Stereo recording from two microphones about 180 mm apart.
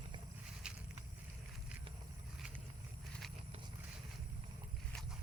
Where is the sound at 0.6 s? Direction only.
5° right (ahead or behind).